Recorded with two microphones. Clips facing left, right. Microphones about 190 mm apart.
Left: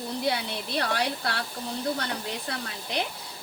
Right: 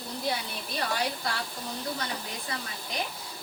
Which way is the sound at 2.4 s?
70° left (ahead or behind).